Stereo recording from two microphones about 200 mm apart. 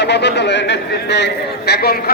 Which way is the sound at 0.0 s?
60° left (ahead or behind).